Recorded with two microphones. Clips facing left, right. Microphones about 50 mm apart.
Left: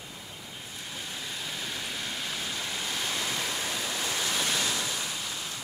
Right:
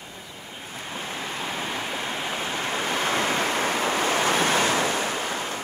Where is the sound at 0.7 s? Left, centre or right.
Right.